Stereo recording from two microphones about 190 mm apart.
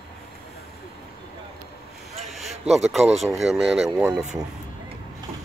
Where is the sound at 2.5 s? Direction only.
35° right (ahead or behind).